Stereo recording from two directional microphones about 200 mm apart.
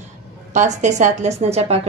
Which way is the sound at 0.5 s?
35° right (ahead or behind).